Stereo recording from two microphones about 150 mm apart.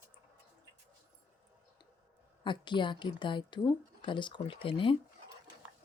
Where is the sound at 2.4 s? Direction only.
30° left (ahead or behind).